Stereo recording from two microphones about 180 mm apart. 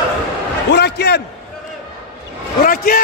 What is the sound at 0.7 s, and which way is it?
Speech, 65° left (ahead or behind).